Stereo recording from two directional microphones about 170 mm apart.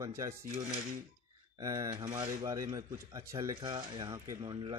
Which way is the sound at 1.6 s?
20° right (ahead or behind).